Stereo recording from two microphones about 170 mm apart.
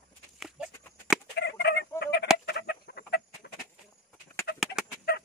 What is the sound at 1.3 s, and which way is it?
Chicken, 75° left (ahead or behind).